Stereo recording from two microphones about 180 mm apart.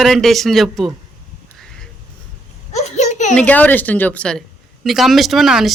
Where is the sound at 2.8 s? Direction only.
40° left (ahead or behind).